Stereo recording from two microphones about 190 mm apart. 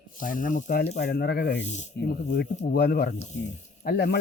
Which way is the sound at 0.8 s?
60° left (ahead or behind).